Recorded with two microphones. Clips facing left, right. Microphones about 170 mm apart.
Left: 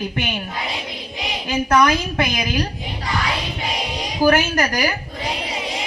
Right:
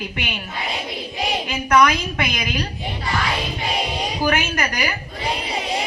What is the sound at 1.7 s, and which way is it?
Speech, 35° left (ahead or behind).